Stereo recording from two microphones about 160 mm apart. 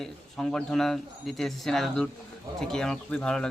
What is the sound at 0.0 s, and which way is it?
A man's voice, 5° left (ahead or behind).